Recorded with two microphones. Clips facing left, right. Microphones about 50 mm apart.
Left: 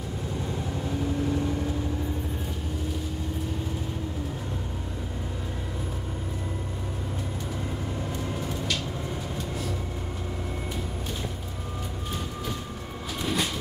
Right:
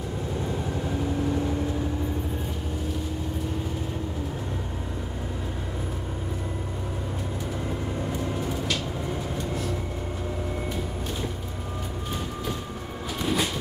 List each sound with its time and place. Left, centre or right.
0.8 s vehicle: centre
8.1 s vehicle: centre
13.2 s train: centre